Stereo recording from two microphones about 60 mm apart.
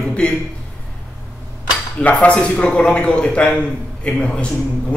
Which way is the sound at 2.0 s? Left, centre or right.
Left.